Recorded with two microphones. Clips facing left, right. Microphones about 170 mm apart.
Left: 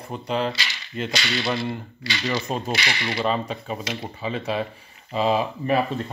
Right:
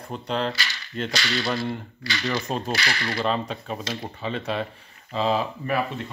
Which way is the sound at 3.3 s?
5° left (ahead or behind).